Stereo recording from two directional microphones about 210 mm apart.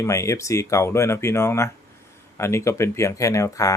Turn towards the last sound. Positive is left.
turn(degrees=15)  # may be behind; listen again after turning